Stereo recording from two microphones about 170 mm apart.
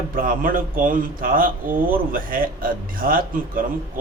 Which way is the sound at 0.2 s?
55° right (ahead or behind).